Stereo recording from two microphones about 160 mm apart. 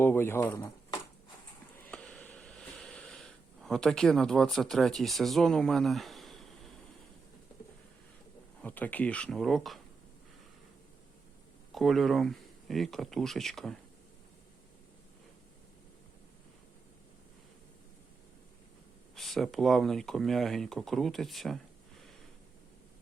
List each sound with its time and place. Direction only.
0.0 s speech: 15° left (ahead or behind)
1.8 s a sound: 5° left (ahead or behind)
8.6 s speech: 10° left (ahead or behind)
11.7 s speech: centre (ahead or behind)
19.1 s speech: centre (ahead or behind)